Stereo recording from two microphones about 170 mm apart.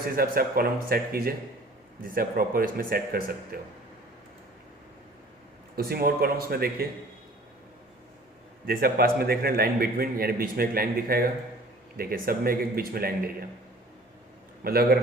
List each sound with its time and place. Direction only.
0.0 s a man's voice: 60° right (ahead or behind)
5.7 s a man's voice: 60° right (ahead or behind)
8.6 s a man's voice: 60° right (ahead or behind)
14.6 s a man's voice: 60° right (ahead or behind)